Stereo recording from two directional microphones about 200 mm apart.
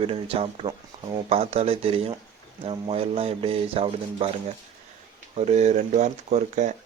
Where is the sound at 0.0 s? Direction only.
30° right (ahead or behind).